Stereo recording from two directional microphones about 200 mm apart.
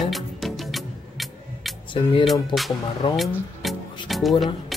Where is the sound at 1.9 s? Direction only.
25° left (ahead or behind).